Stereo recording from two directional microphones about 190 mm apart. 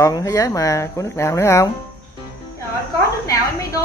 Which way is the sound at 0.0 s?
15° left (ahead or behind).